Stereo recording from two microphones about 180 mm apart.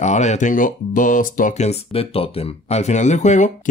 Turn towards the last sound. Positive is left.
turn(degrees=40)  # may be behind; listen again after turning